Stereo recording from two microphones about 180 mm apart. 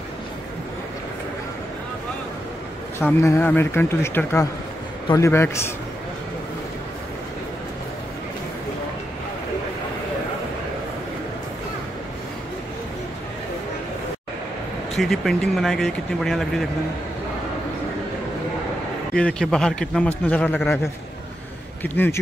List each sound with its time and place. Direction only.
3.0 s a man's voice: 15° left (ahead or behind)
15.0 s speech: centre (ahead or behind)
19.1 s a man's voice: 5° left (ahead or behind)
21.8 s a man's voice: 10° left (ahead or behind)